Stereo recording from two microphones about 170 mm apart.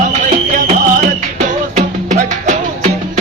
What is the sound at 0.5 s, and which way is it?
Music, 50° right (ahead or behind).